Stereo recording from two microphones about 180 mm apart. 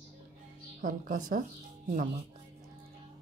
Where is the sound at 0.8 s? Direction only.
50° right (ahead or behind).